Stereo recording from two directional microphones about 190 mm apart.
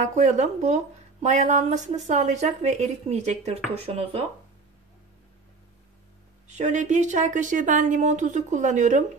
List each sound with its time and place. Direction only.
0.0 s speech: 40° right (ahead or behind)
6.4 s speech: 40° right (ahead or behind)